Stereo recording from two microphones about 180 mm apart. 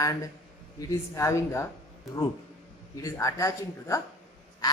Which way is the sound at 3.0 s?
20° left (ahead or behind).